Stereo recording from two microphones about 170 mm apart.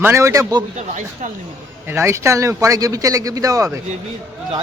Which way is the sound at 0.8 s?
45° right (ahead or behind).